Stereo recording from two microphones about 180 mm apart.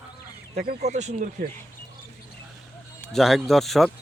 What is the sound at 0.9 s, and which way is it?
Speech, 40° right (ahead or behind).